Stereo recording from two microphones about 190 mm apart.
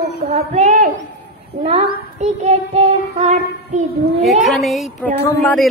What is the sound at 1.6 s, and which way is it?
Speech, 30° right (ahead or behind).